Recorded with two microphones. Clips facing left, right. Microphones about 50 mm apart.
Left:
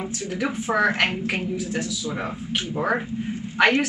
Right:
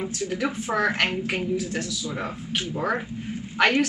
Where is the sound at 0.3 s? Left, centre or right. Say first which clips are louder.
Left 3 dB; centre.